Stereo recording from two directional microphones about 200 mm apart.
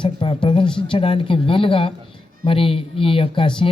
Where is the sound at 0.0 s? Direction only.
25° left (ahead or behind).